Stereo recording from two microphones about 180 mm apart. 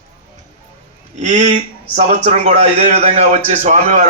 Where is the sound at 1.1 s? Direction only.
40° right (ahead or behind).